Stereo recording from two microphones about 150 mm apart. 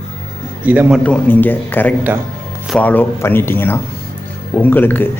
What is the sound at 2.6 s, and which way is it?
Speech, 10° left (ahead or behind).